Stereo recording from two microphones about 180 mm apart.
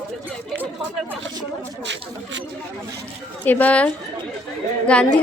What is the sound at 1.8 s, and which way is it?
Speech, 80° right.